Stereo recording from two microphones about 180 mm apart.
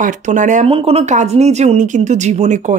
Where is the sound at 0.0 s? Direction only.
45° right (ahead or behind).